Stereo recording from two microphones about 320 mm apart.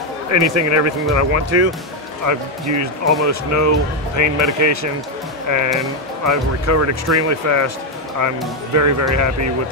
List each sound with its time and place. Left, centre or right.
0.3 s speech: right
8.7 s speech: right